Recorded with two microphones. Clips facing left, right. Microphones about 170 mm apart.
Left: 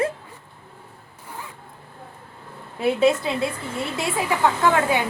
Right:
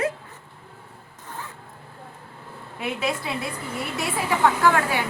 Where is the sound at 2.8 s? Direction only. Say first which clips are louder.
Left 9 dB; 25° left (ahead or behind).